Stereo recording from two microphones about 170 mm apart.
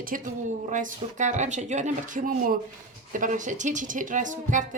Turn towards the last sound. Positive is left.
turn(degrees=-50)  # may be behind; listen again after turning